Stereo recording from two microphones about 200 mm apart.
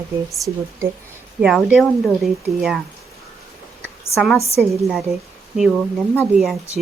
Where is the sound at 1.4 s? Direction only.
5° right (ahead or behind).